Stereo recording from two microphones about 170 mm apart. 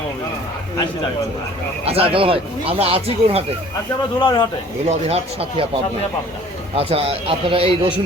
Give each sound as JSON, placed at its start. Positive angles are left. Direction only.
{"t": 1.8, "sound": "speech", "side_deg": -35}
{"t": 4.2, "sound": "speech", "side_deg": 25}
{"t": 4.9, "sound": "speech", "side_deg": -35}
{"t": 6.7, "sound": "speech", "side_deg": -35}